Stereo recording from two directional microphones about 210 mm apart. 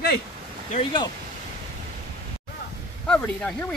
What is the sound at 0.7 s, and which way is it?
Speech, 25° left (ahead or behind).